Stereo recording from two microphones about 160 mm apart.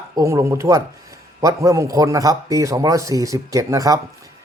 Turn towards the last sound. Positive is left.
turn(degrees=-20)  # may be behind; listen again after turning